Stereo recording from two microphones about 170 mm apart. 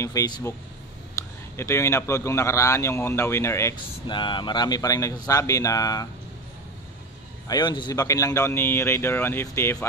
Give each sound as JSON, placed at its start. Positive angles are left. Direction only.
{"t": 0.0, "sound": "speech", "side_deg": 20}
{"t": 3.7, "sound": "speech", "side_deg": 30}
{"t": 7.4, "sound": "speech", "side_deg": 25}